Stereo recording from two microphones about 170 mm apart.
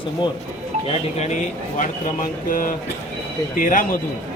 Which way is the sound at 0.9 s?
40° left (ahead or behind).